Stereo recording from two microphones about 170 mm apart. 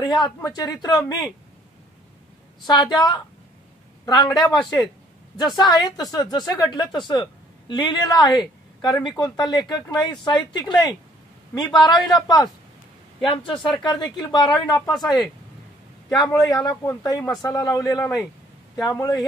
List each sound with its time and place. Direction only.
0.0 s a woman's voice: 25° left (ahead or behind)
2.6 s a woman's voice: 25° left (ahead or behind)
4.0 s a woman's voice: 25° left (ahead or behind)
16.1 s a woman's voice: 20° left (ahead or behind)